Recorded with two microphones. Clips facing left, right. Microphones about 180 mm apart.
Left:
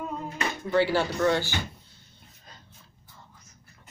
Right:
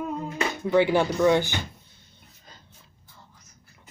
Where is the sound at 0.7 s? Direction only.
20° right (ahead or behind).